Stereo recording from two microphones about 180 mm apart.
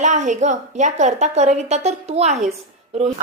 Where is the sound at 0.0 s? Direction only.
40° right (ahead or behind).